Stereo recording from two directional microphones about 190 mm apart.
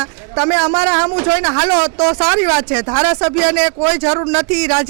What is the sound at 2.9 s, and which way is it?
Speech, 25° right (ahead or behind).